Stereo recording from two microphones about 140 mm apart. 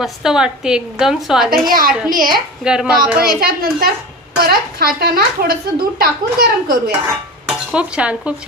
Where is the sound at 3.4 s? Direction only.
90° right.